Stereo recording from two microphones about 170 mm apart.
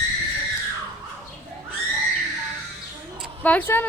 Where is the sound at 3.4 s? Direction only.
10° left (ahead or behind).